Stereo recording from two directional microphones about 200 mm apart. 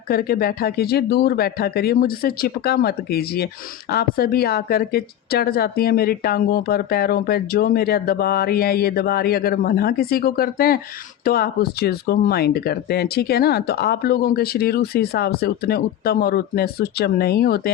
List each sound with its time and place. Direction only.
0.1 s speech: 50° left (ahead or behind)